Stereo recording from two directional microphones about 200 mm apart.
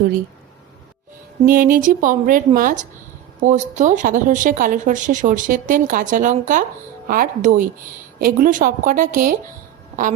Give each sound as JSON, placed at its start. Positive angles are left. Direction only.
{"t": 1.5, "sound": "speech", "side_deg": -45}